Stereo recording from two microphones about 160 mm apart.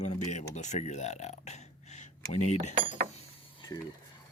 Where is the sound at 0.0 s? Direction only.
45° left (ahead or behind).